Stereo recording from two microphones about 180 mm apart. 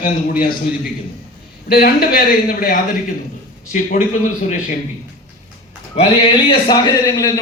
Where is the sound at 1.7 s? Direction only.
55° left (ahead or behind).